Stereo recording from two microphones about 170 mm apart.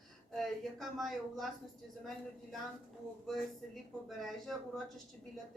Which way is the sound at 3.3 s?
Centre (ahead or behind).